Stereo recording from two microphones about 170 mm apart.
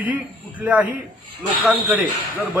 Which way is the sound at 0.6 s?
10° right (ahead or behind).